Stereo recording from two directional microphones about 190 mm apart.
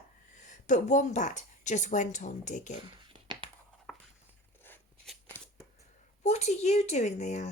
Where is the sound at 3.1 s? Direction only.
25° right (ahead or behind).